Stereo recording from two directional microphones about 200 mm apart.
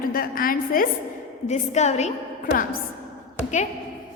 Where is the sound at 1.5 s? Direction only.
35° left (ahead or behind).